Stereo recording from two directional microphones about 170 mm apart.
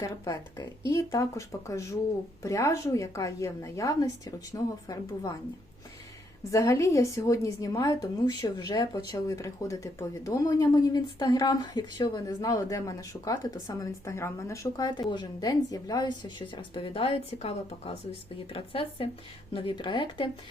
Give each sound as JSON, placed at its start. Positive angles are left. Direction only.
{"t": 0.0, "sound": "a woman's voice", "side_deg": 20}
{"t": 6.5, "sound": "a woman's voice", "side_deg": 15}